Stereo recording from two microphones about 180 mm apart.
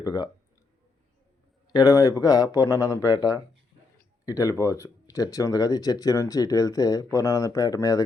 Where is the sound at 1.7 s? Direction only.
20° left (ahead or behind).